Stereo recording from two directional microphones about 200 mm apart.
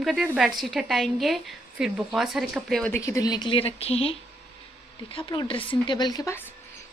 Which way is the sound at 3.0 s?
15° left (ahead or behind).